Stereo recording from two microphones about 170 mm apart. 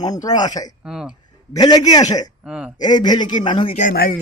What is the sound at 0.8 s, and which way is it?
Speech, 5° right (ahead or behind).